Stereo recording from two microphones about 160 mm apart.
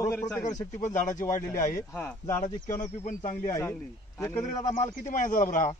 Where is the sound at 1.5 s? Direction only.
20° left (ahead or behind).